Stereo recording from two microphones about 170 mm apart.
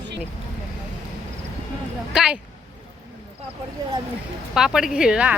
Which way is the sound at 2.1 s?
5° right (ahead or behind).